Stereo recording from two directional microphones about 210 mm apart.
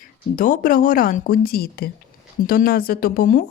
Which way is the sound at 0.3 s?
40° left (ahead or behind).